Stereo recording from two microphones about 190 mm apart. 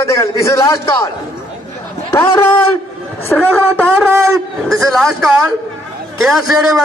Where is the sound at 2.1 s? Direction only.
10° left (ahead or behind).